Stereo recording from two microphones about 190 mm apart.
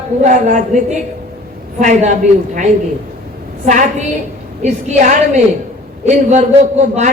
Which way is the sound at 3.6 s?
40° right (ahead or behind).